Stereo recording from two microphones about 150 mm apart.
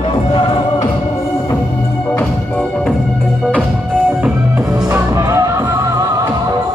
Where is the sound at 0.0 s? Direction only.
30° left (ahead or behind).